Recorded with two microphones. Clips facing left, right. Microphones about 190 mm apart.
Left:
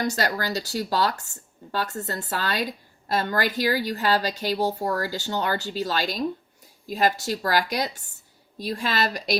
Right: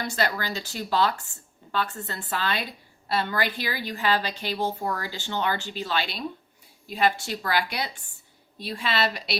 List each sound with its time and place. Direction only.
0.0 s a woman's voice: 40° left (ahead or behind)